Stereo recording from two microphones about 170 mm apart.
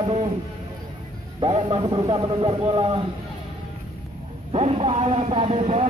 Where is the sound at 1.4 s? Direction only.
30° right (ahead or behind).